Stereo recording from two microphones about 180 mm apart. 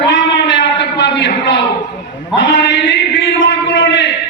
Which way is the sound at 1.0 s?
75° left (ahead or behind).